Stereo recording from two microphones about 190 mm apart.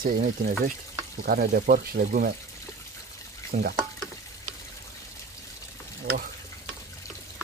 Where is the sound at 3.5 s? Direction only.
40° right (ahead or behind).